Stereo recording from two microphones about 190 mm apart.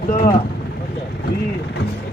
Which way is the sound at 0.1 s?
30° left (ahead or behind).